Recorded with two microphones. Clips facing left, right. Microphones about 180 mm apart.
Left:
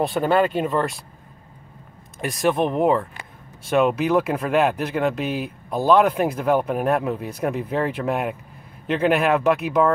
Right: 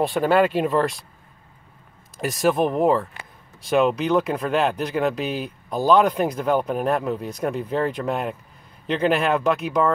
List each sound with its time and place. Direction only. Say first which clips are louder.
0.0 s speech: right 1 dB; centre (ahead or behind)
2.1 s speech: right 1 dB; centre (ahead or behind)